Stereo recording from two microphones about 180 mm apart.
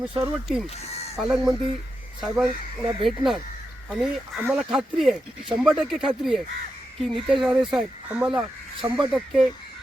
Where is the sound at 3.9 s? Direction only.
5° right (ahead or behind).